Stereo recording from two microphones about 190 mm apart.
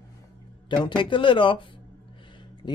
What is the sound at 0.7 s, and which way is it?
Speech, 25° left (ahead or behind).